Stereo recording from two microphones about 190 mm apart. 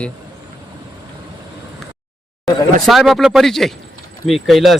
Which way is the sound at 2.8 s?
Centre (ahead or behind).